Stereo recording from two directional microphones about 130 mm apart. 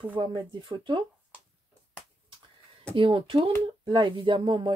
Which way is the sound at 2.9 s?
40° right (ahead or behind).